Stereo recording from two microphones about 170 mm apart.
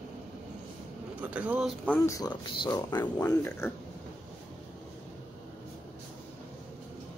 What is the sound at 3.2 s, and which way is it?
Speech, 15° left (ahead or behind).